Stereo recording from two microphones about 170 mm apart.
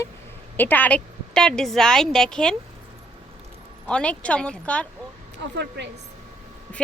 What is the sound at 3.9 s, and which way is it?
Speech, 5° left (ahead or behind).